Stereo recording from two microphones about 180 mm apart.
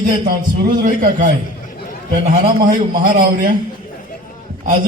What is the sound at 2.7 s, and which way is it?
Speech, 50° right (ahead or behind).